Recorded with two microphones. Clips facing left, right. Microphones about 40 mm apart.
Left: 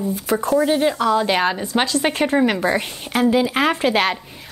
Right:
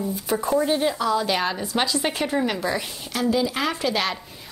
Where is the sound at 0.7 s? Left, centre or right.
Left.